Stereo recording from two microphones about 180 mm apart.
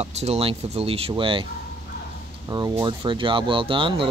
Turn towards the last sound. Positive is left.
turn(degrees=-30)  # may be behind; listen again after turning